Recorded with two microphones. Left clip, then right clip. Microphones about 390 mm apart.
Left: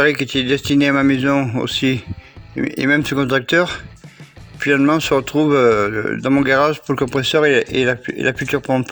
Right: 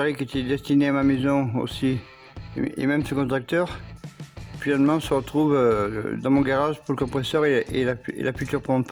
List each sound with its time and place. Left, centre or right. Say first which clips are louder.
0.0 s speech: left 10 dB; right